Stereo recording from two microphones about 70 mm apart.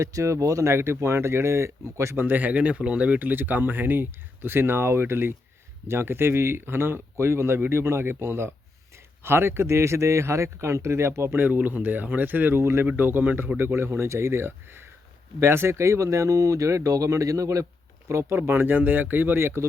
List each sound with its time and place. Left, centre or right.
0.0 s speech: right
2.2 s speech: right
13.0 s speech: right
18.1 s speech: right